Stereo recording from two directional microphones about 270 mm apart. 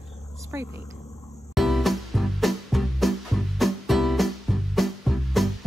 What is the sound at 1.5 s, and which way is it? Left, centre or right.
Music, centre.